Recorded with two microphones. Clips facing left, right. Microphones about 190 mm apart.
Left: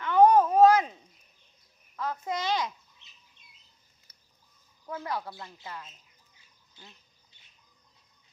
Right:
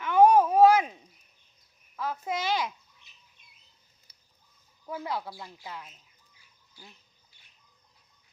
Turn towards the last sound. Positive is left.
turn(degrees=20)  # may be behind; listen again after turning